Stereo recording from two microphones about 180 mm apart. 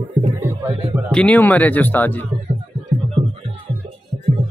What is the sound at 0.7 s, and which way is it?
Speech, 30° right (ahead or behind).